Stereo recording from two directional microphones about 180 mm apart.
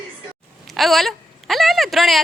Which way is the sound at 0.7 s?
Centre (ahead or behind).